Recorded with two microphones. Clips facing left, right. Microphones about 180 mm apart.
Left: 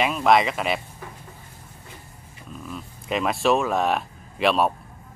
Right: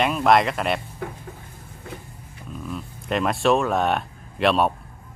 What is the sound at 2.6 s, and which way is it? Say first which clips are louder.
Speech: right 4 dB; centre (ahead or behind).